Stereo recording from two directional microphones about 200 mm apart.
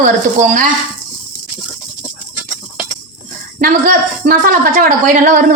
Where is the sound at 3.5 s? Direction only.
45° right (ahead or behind).